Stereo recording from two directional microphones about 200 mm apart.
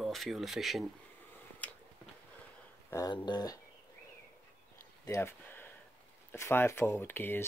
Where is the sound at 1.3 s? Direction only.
5° left (ahead or behind).